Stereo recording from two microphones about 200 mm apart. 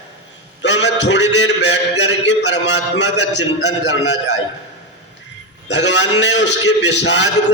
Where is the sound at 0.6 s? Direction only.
60° left (ahead or behind).